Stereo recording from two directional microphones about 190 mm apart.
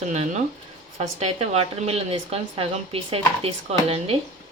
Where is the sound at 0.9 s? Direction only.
35° right (ahead or behind).